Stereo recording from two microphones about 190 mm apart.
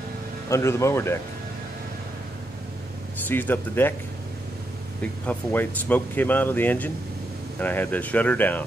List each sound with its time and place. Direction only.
0.5 s speech: 15° left (ahead or behind)
3.3 s speech: 10° left (ahead or behind)
5.0 s speech: 5° left (ahead or behind)